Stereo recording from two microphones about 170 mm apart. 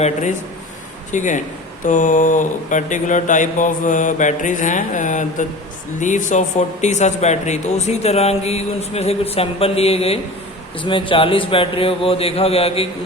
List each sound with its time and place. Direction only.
0.0 s speech: 45° left (ahead or behind)